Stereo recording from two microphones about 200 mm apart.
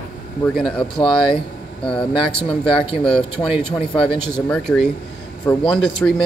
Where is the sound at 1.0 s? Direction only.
25° left (ahead or behind).